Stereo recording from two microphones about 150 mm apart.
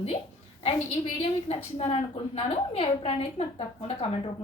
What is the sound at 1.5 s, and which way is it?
A woman's voice, 40° left (ahead or behind).